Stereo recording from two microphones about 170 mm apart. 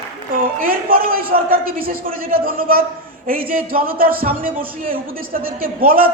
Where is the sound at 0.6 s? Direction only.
55° right (ahead or behind).